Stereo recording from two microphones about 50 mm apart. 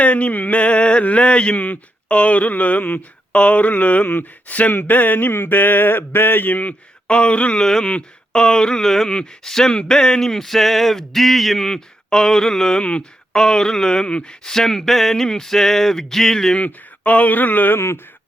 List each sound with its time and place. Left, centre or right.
0.0 s a sound: left
1.6 s speech: left
4.7 s mantra: left
7.1 s a sound: left
7.9 s speech: left
12.8 s a sound: left
13.3 s speech: centre
16.6 s speech: left
17.7 s speech: left